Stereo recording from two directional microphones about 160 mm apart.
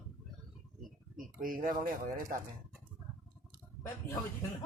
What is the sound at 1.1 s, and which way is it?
Speech, 60° right (ahead or behind).